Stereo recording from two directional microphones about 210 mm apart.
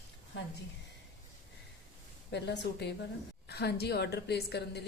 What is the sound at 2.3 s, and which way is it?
A woman's voice, 55° left (ahead or behind).